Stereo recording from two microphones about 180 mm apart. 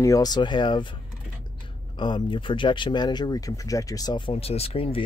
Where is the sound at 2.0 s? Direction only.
25° left (ahead or behind).